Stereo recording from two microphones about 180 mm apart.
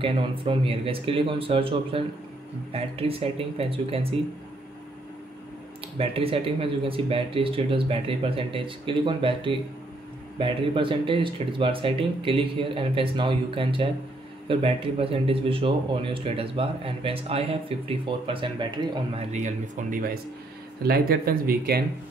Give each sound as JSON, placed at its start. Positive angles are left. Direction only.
{"t": 0.0, "sound": "speech", "side_deg": -30}
{"t": 5.9, "sound": "speech", "side_deg": -30}
{"t": 19.3, "sound": "speech", "side_deg": -45}
{"t": 20.8, "sound": "speech", "side_deg": -55}